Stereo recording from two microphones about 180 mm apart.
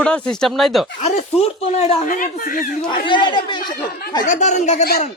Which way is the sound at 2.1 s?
50° left (ahead or behind).